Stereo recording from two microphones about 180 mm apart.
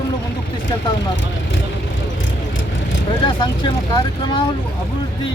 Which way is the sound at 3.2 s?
25° left (ahead or behind).